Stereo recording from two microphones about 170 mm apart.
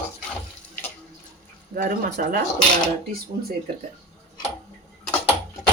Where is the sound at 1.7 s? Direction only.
60° right (ahead or behind).